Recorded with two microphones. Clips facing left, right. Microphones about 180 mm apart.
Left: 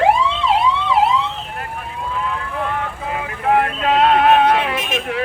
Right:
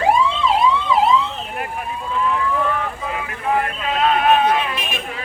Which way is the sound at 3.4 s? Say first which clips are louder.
Left 5 dB; 65° left (ahead or behind).